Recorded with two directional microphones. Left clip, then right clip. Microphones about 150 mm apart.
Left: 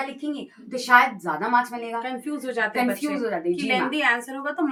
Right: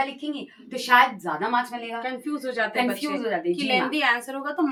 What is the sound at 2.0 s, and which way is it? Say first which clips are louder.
A woman's voice: even; 25° left (ahead or behind).